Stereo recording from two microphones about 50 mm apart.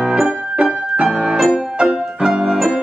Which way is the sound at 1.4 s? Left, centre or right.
Centre.